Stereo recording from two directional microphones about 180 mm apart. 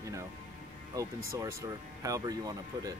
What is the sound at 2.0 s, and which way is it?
Speech, 20° right (ahead or behind).